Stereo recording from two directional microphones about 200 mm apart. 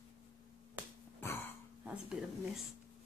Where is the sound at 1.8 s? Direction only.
5° right (ahead or behind).